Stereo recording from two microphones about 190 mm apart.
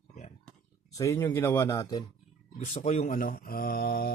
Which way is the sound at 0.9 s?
15° left (ahead or behind).